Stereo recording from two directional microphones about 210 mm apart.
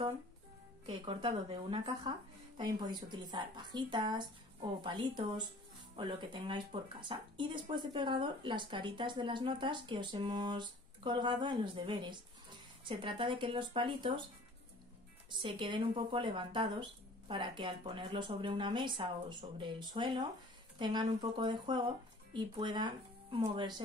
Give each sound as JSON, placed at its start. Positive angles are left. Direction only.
{"t": 0.8, "sound": "speech", "side_deg": -25}
{"t": 15.2, "sound": "speech", "side_deg": -25}